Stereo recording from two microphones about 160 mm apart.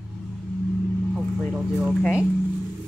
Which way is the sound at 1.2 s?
5° right (ahead or behind).